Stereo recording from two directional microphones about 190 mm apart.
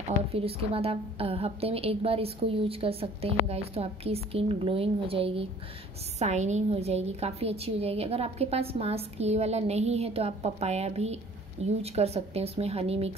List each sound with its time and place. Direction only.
0.3 s a woman's voice: 30° right (ahead or behind)